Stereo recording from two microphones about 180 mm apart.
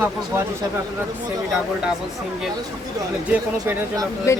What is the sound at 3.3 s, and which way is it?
Speech, 10° right (ahead or behind).